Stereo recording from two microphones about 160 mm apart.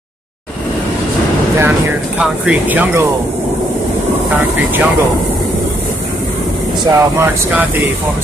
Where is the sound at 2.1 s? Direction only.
5° right (ahead or behind).